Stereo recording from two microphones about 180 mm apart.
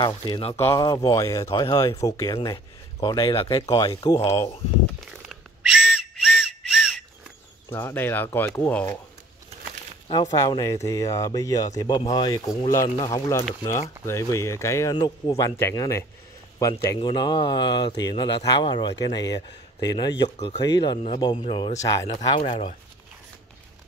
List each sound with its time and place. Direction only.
0.0 s speech: 25° left (ahead or behind)
0.7 s speech: 20° left (ahead or behind)
5.3 s whistle: centre (ahead or behind)
7.7 s speech: 10° left (ahead or behind)
10.2 s speech: 20° left (ahead or behind)